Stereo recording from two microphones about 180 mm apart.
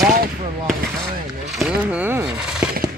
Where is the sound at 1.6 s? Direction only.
5° right (ahead or behind).